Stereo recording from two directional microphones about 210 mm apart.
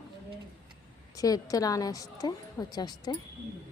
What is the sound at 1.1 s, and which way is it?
A woman's voice, 15° left (ahead or behind).